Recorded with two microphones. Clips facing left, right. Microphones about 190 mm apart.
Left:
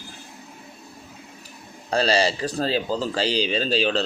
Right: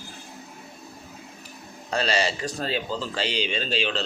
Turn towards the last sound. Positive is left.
turn(degrees=40)  # may be behind; listen again after turning